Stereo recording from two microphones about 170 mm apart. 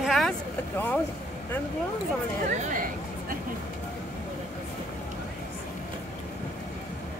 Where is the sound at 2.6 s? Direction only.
50° right (ahead or behind).